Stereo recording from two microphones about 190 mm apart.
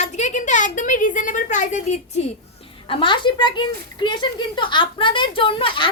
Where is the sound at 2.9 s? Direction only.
25° left (ahead or behind).